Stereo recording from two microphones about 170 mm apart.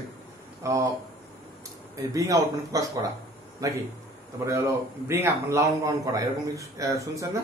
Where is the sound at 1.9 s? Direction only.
20° right (ahead or behind).